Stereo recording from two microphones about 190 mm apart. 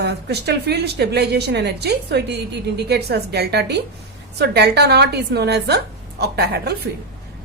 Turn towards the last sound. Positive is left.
turn(degrees=-55)  # may be behind; listen again after turning